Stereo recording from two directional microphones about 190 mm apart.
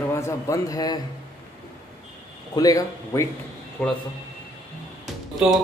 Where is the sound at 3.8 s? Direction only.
5° left (ahead or behind).